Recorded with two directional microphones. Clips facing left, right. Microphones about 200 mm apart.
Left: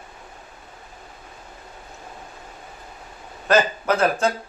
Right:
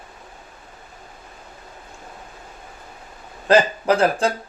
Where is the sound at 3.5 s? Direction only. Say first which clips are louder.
Right 3 dB; 30° right (ahead or behind).